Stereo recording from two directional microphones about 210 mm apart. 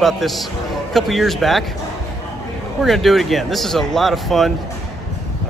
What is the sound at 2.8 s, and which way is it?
Speech, centre (ahead or behind).